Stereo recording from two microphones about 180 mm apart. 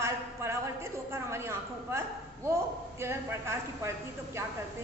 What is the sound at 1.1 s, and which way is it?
A woman's voice, 15° right (ahead or behind).